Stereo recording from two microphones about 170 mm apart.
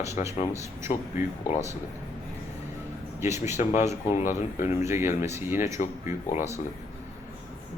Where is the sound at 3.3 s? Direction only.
15° right (ahead or behind).